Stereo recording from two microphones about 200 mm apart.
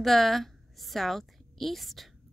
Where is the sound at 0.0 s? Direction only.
Centre (ahead or behind).